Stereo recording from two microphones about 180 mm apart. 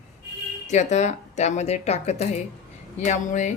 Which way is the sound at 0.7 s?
40° left (ahead or behind).